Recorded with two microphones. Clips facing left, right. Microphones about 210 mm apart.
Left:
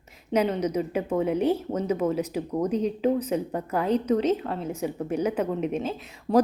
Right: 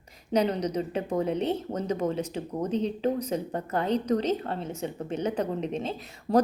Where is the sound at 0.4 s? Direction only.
5° left (ahead or behind).